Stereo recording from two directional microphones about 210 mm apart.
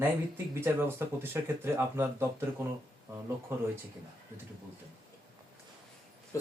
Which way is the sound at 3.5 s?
10° right (ahead or behind).